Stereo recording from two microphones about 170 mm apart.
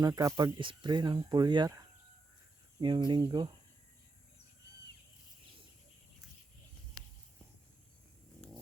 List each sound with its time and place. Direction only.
0.0 s speech: 20° right (ahead or behind)
2.8 s speech: 25° right (ahead or behind)